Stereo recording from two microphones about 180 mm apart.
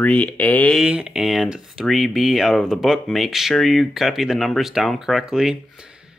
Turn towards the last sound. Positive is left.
turn(degrees=-5)  # may be behind; listen again after turning